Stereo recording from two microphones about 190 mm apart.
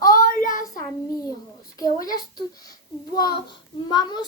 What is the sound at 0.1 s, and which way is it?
Child singing, 45° left (ahead or behind).